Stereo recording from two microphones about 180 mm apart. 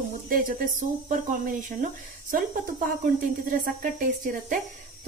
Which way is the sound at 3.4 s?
50° right (ahead or behind).